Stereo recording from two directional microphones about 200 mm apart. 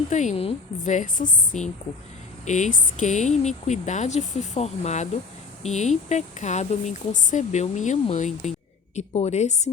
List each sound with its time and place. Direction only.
0.1 s a woman's voice: 35° left (ahead or behind)